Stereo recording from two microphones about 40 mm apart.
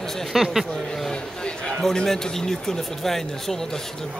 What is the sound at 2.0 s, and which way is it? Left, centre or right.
Speech, centre.